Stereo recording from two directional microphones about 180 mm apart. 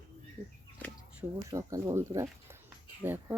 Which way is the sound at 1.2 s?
15° right (ahead or behind).